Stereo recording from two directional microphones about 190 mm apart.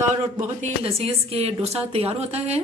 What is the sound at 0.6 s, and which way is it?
A woman's voice, 30° right (ahead or behind).